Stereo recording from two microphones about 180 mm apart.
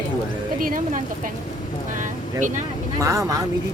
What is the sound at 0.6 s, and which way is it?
Speech, 50° right (ahead or behind).